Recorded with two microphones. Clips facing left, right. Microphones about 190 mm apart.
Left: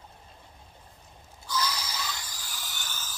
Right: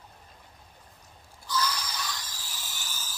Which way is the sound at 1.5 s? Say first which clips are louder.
Right 1 dB; 10° left (ahead or behind).